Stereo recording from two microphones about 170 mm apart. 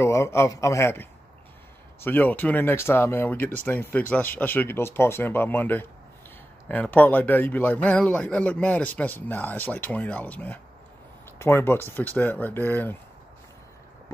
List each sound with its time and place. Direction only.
0.0 s speech: 15° left (ahead or behind)